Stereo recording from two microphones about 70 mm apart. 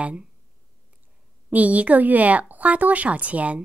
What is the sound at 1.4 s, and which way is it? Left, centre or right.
A woman's voice, right.